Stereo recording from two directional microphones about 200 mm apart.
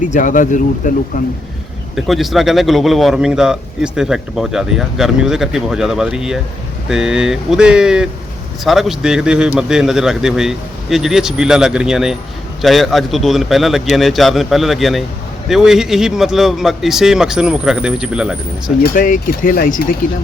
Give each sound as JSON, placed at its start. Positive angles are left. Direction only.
{"t": 0.1, "sound": "speech", "side_deg": 40}
{"t": 2.0, "sound": "a man's voice", "side_deg": 0}
{"t": 18.8, "sound": "speech", "side_deg": 40}